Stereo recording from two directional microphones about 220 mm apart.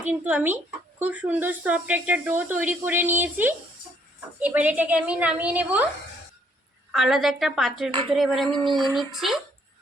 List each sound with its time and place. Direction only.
0.1 s speech: 5° right (ahead or behind)
6.9 s a woman's voice: centre (ahead or behind)
8.4 s a sound: 20° right (ahead or behind)
9.0 s a woman's voice: centre (ahead or behind)